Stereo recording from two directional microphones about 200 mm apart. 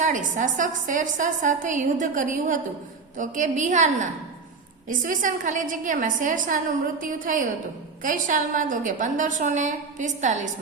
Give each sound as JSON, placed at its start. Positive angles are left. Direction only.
{"t": 0.0, "sound": "a woman's voice", "side_deg": -40}